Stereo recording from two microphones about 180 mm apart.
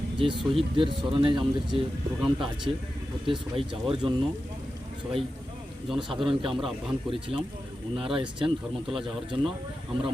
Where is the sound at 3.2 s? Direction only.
30° right (ahead or behind).